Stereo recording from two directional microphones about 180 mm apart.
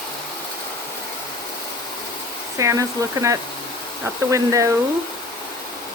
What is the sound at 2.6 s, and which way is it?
Speech, 15° right (ahead or behind).